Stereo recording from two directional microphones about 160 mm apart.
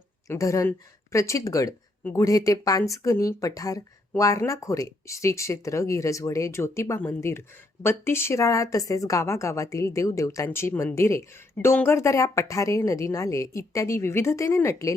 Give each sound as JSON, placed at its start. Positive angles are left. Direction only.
{"t": 0.3, "sound": "speech", "side_deg": 20}